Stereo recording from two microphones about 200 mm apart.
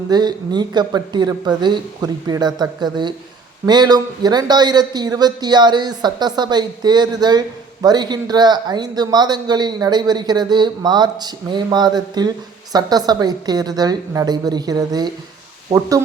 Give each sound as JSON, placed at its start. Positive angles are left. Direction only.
{"t": 0.1, "sound": "a man's voice", "side_deg": -20}